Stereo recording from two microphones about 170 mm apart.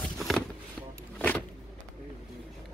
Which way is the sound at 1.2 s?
10° left (ahead or behind).